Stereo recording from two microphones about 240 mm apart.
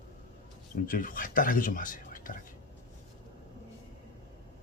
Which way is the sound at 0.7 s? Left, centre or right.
Left.